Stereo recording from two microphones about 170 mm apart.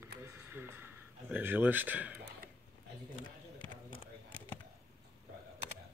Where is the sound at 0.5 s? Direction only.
10° right (ahead or behind).